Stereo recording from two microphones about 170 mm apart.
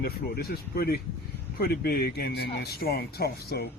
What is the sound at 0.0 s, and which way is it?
Speech, 65° left (ahead or behind).